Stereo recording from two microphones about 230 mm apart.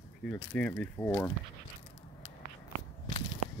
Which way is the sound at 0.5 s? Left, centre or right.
Centre.